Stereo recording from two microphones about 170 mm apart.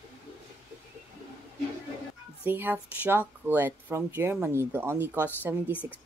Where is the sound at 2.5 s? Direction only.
10° right (ahead or behind).